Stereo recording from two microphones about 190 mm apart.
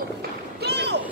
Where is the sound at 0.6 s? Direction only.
60° right (ahead or behind).